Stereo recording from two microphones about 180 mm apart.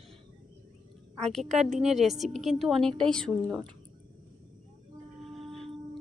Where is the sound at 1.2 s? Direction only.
Centre (ahead or behind).